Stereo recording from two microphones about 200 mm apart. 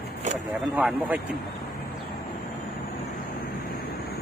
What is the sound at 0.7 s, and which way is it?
Speech, 5° right (ahead or behind).